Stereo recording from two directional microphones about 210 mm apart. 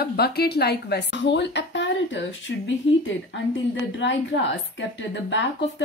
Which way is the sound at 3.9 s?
60° left (ahead or behind).